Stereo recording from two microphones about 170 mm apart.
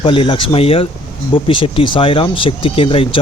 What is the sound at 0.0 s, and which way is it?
Speech, 30° left (ahead or behind).